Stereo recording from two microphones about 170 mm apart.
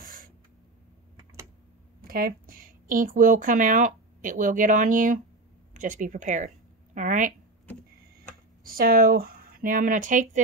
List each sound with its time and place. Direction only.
0.0 s a sound: 55° right (ahead or behind)
2.0 s speech: 55° right (ahead or behind)
8.6 s speech: 60° right (ahead or behind)